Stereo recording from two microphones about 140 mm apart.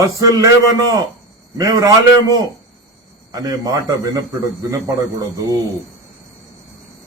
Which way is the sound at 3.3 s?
25° right (ahead or behind).